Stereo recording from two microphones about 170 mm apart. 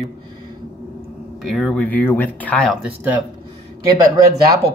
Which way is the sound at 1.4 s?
5° left (ahead or behind).